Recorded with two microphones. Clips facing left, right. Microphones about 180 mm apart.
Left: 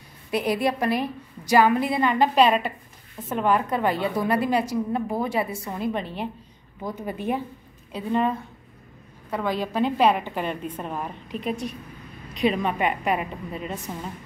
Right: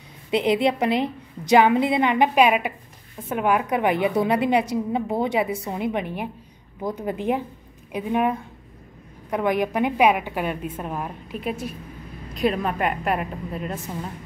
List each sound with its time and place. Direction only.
0.3 s a woman's voice: 20° right (ahead or behind); by 14.1 s centre (ahead or behind)